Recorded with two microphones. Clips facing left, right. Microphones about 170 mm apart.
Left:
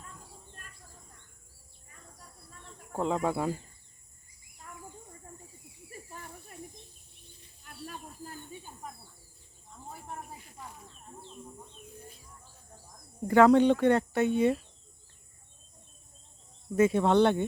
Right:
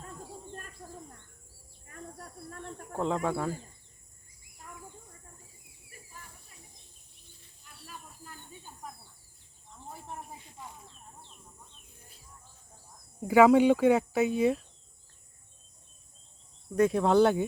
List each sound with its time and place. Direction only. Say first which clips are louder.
1.9 s cricket: right 10 dB; 60° right (ahead or behind)
2.9 s speech: left 1 dB; centre (ahead or behind)
7.6 s snake: left 8 dB; 55° left (ahead or behind)
13.2 s speech: even; 5° right (ahead or behind)
16.7 s speech: even; centre (ahead or behind)